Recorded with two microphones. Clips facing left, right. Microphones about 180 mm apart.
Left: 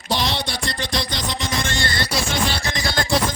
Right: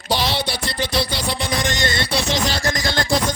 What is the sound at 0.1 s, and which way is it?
Music, 5° right (ahead or behind).